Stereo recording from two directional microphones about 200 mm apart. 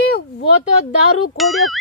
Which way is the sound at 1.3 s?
Centre (ahead or behind).